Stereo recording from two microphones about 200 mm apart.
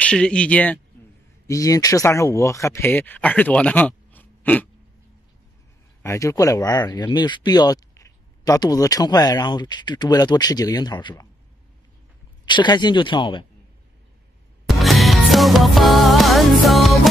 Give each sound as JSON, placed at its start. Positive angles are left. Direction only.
{"t": 0.0, "sound": "speech", "side_deg": 5}
{"t": 1.5, "sound": "speech", "side_deg": 15}
{"t": 6.0, "sound": "speech", "side_deg": 15}
{"t": 12.4, "sound": "speech", "side_deg": 20}
{"t": 14.7, "sound": "music", "side_deg": 0}